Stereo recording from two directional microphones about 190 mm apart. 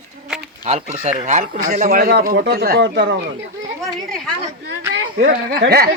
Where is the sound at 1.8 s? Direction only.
55° right (ahead or behind).